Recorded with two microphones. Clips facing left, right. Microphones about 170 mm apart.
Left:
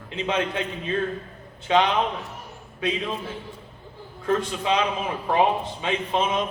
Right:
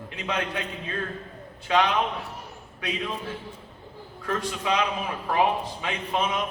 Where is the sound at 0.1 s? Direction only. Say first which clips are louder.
Left 5 dB; 25° left (ahead or behind).